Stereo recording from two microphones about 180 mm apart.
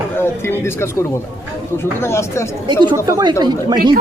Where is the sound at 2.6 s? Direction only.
25° right (ahead or behind).